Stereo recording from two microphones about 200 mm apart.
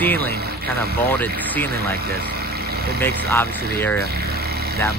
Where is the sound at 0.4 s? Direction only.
50° right (ahead or behind).